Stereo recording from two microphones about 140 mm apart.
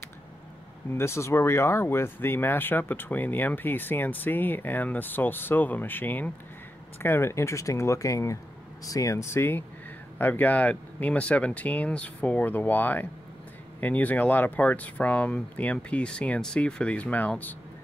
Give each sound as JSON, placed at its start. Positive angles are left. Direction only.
{"t": 0.9, "sound": "speech", "side_deg": 20}